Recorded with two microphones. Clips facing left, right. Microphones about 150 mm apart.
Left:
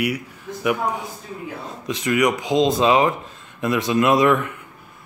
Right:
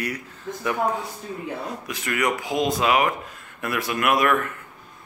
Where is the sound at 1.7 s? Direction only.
20° left (ahead or behind).